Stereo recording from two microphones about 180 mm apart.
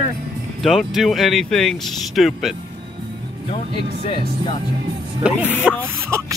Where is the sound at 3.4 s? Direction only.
30° left (ahead or behind).